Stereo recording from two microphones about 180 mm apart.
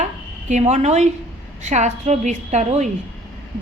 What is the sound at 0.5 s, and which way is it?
A woman's voice, 40° right (ahead or behind).